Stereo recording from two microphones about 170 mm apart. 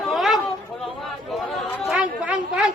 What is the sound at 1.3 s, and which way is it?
Chatter, centre (ahead or behind).